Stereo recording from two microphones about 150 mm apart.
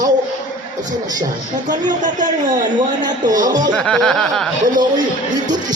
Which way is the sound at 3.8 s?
5° left (ahead or behind).